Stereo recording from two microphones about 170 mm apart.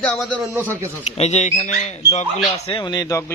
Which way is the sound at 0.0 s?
5° left (ahead or behind).